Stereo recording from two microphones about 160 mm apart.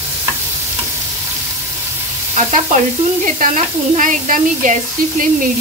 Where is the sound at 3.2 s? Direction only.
55° right (ahead or behind).